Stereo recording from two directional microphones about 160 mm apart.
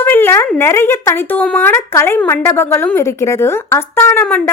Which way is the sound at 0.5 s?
15° left (ahead or behind).